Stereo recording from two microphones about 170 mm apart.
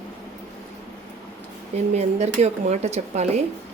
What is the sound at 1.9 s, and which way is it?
A woman's voice, 40° right (ahead or behind).